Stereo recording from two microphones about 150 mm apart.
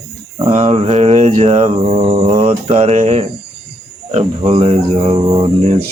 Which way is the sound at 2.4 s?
45° right (ahead or behind).